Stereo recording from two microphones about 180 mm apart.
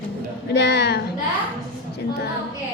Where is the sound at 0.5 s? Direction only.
70° left (ahead or behind).